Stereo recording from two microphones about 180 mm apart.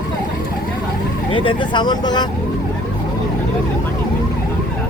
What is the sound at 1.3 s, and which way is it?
Vehicle, 30° left (ahead or behind).